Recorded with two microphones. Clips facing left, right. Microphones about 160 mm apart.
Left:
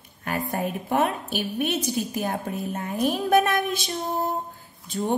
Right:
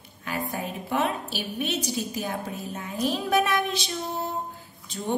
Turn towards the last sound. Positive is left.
turn(degrees=50)  # may be behind; listen again after turning